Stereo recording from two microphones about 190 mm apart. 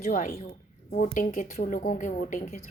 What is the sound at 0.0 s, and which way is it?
A woman's voice, 45° left (ahead or behind).